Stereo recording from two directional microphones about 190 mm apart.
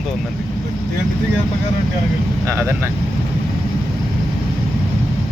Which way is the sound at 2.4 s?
15° right (ahead or behind).